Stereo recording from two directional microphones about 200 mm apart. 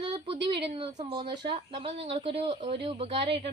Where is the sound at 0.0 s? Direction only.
25° right (ahead or behind).